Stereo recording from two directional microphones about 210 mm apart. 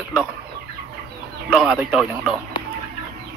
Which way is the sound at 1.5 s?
Centre (ahead or behind).